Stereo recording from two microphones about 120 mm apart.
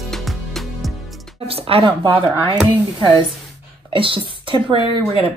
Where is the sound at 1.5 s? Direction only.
55° right (ahead or behind).